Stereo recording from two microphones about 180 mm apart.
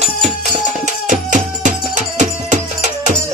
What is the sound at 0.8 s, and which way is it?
Music, 45° right (ahead or behind).